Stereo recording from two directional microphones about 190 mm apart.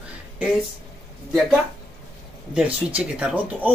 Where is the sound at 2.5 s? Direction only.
5° right (ahead or behind).